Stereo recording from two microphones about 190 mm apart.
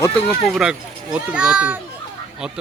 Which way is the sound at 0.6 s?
5° right (ahead or behind).